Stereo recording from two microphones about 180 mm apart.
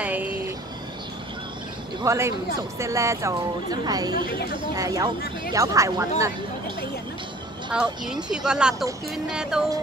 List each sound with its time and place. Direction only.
0.0 s vehicle: 10° right (ahead or behind)
2.0 s speech: 15° right (ahead or behind)
8.1 s speech: 5° right (ahead or behind)